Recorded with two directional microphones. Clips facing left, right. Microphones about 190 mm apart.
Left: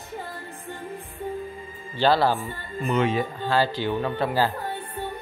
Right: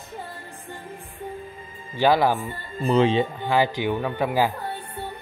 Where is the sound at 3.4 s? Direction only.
15° right (ahead or behind).